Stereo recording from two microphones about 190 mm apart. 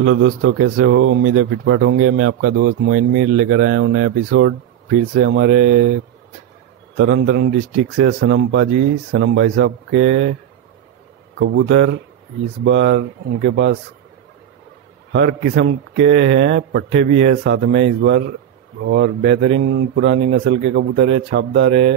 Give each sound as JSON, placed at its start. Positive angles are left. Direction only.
{"t": 0.0, "sound": "speech", "side_deg": -90}
{"t": 7.2, "sound": "speech", "side_deg": -80}
{"t": 11.3, "sound": "speech", "side_deg": -80}
{"t": 15.1, "sound": "speech", "side_deg": -65}